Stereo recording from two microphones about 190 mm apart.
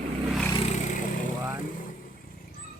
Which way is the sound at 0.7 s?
40° left (ahead or behind).